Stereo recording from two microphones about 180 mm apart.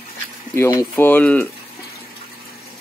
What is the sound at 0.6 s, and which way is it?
Speech, 15° left (ahead or behind).